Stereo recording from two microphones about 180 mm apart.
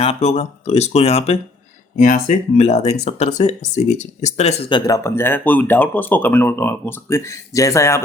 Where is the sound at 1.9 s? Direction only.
45° left (ahead or behind).